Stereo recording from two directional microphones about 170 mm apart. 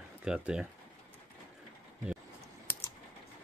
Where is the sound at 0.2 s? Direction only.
5° right (ahead or behind).